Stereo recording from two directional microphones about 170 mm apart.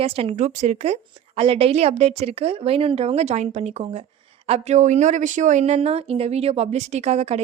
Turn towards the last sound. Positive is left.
turn(degrees=-40)  # may be behind; listen again after turning